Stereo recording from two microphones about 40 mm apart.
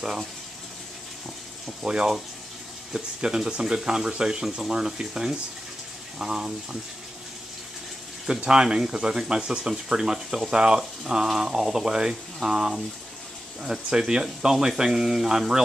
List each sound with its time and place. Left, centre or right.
1.7 s speech: centre
8.5 s speech: centre